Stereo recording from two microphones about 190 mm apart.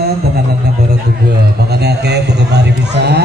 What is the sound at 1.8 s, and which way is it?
A man's voice, 60° right (ahead or behind).